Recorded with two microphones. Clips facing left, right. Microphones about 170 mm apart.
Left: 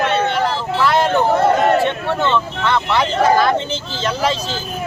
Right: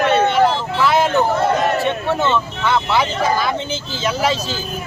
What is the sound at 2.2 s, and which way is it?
Speech, 5° right (ahead or behind).